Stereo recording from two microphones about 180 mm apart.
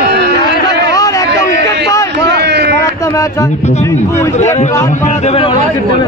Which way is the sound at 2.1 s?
70° right (ahead or behind).